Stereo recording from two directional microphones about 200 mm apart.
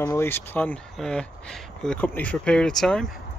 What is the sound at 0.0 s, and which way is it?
Speech, 10° left (ahead or behind).